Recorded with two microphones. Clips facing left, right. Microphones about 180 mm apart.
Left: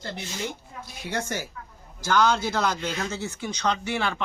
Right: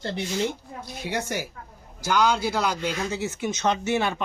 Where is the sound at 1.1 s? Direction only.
15° right (ahead or behind).